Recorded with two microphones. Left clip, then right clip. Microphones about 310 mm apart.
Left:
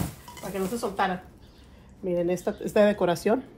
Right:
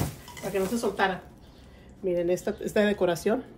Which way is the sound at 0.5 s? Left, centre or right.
Centre.